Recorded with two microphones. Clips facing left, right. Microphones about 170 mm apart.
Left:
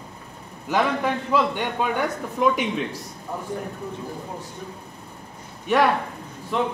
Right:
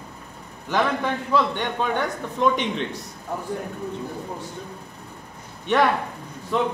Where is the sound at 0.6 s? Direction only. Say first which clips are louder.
Left 1 dB; 10° left (ahead or behind).